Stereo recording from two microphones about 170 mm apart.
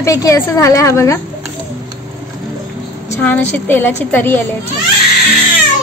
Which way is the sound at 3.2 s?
10° left (ahead or behind).